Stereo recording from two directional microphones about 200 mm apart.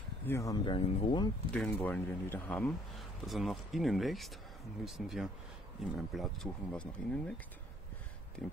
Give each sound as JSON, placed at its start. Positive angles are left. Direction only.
{"t": 0.3, "sound": "speech", "side_deg": 15}
{"t": 1.5, "sound": "speech", "side_deg": 5}
{"t": 8.4, "sound": "speech", "side_deg": 5}